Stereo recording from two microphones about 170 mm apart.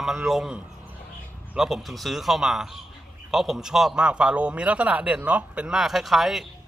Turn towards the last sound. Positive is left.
turn(degrees=0)  # may be behind; listen again after turning